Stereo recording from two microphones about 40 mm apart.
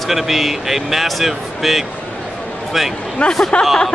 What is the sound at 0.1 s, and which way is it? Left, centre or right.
Speech, centre.